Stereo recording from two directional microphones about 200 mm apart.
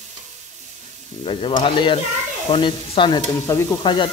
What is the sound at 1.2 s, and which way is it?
Stir, 25° left (ahead or behind).